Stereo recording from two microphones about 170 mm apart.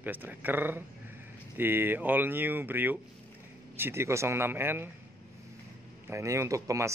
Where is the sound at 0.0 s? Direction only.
10° right (ahead or behind).